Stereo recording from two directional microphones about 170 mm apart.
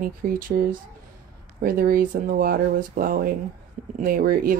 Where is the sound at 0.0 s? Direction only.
55° right (ahead or behind).